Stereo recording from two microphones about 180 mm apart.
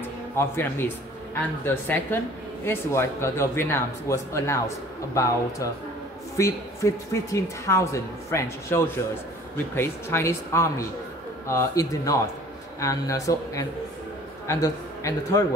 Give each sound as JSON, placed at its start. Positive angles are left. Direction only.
{"t": 0.0, "sound": "a man's voice", "side_deg": 10}